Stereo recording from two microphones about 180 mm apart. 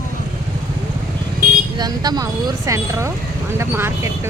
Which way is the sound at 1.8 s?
20° right (ahead or behind).